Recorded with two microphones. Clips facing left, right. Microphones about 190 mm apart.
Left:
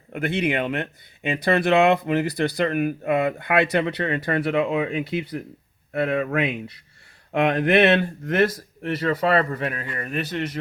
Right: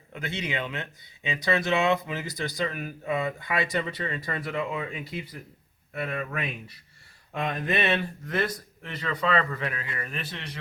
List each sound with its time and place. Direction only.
0.1 s speech: 55° left (ahead or behind); by 7.9 s 80° left
9.0 s a man's voice: 45° left (ahead or behind)